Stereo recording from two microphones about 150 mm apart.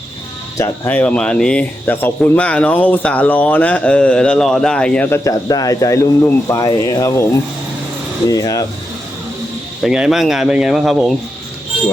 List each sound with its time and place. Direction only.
0.5 s speech: 15° left (ahead or behind)
5.0 s speech: 20° left (ahead or behind)
8.3 s speech: 25° left (ahead or behind)
9.8 s speech: 5° right (ahead or behind)